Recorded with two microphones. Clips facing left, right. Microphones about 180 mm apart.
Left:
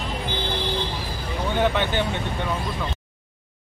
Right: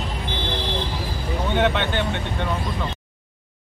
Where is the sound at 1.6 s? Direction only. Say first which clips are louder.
Even; 5° left (ahead or behind).